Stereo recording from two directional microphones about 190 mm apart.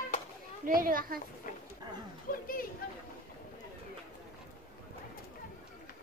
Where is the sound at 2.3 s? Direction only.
45° left (ahead or behind).